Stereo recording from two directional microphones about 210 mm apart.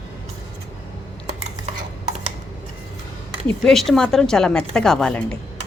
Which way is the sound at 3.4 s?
5° left (ahead or behind).